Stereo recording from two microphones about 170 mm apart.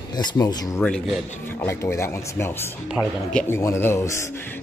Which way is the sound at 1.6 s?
15° left (ahead or behind).